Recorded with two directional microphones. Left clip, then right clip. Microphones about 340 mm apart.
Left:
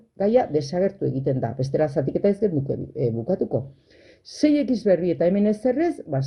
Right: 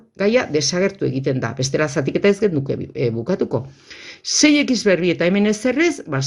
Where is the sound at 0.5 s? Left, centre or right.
Right.